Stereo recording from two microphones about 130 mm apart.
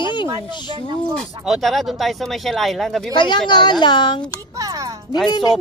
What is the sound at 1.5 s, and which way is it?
Speech, centre (ahead or behind).